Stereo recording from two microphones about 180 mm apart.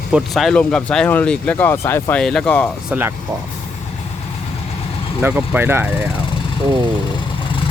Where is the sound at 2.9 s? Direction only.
10° right (ahead or behind).